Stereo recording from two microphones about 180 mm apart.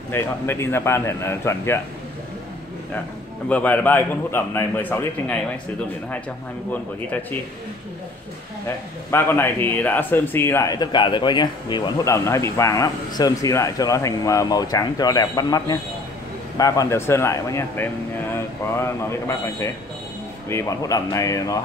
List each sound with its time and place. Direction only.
0.1 s a man's voice: 15° left (ahead or behind)
3.4 s a man's voice: 10° left (ahead or behind)
6.7 s a man's voice: 10° left (ahead or behind)
8.6 s a man's voice: 10° left (ahead or behind)